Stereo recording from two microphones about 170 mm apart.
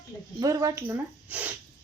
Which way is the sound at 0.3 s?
20° right (ahead or behind).